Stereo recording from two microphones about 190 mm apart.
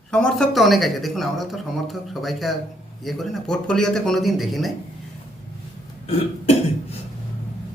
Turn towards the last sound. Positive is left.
turn(degrees=30)  # may be behind; listen again after turning